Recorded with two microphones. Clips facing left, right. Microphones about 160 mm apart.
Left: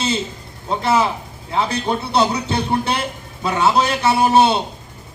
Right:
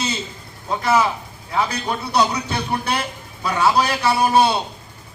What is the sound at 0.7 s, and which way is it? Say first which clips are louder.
Speech: left 1 dB; 25° left (ahead or behind).